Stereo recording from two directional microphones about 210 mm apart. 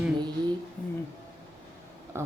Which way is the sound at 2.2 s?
10° right (ahead or behind).